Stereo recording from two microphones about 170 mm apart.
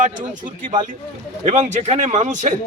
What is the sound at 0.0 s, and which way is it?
A man's voice, 50° right (ahead or behind).